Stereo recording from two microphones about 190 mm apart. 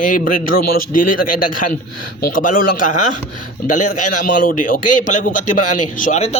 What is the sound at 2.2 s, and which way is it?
A man's voice, 45° left (ahead or behind).